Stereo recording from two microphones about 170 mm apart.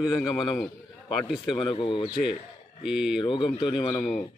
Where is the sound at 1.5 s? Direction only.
30° left (ahead or behind).